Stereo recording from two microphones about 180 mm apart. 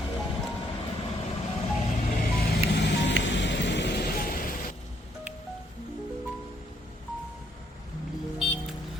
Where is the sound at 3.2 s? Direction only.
80° left.